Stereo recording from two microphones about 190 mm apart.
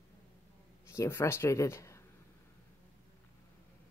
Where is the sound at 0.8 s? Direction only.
15° left (ahead or behind).